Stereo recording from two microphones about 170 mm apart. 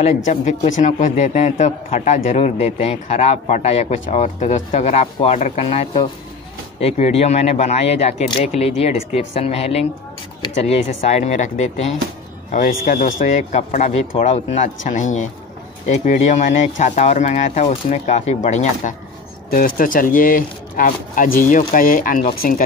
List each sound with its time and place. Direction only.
0.0 s a man's voice: 45° left (ahead or behind)
19.5 s speech: 55° left (ahead or behind)